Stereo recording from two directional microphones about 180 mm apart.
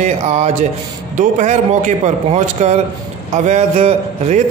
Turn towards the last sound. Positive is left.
turn(degrees=-35)  # may be behind; listen again after turning